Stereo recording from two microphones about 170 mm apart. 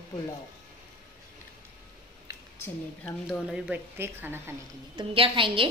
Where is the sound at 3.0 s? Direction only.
5° left (ahead or behind).